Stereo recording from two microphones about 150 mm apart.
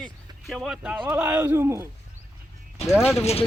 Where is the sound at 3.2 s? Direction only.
45° left (ahead or behind).